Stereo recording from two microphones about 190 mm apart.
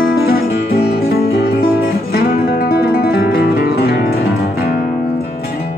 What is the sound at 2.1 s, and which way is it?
Music, 50° left (ahead or behind).